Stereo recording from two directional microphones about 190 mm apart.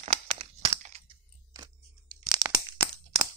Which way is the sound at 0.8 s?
40° right (ahead or behind).